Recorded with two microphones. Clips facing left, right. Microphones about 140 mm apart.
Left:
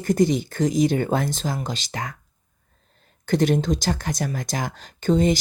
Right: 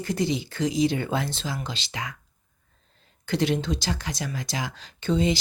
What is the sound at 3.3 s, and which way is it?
Speech, 45° left (ahead or behind).